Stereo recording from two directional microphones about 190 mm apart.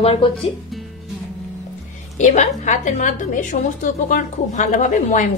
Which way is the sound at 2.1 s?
40° left (ahead or behind).